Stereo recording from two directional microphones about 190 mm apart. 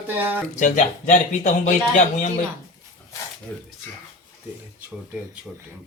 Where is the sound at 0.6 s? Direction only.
40° left (ahead or behind).